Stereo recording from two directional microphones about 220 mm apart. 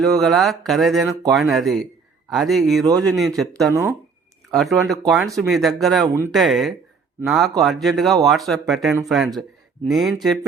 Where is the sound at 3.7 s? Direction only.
10° right (ahead or behind).